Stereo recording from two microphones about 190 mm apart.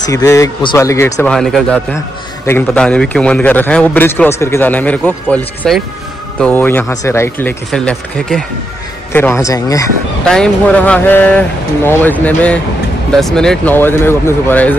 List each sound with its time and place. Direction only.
0.0 s a man's voice: 20° left (ahead or behind)
1.3 s a man's voice: 5° left (ahead or behind)
10.2 s a man's voice: 5° left (ahead or behind)